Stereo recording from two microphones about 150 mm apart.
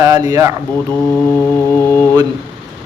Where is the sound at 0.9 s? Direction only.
10° left (ahead or behind).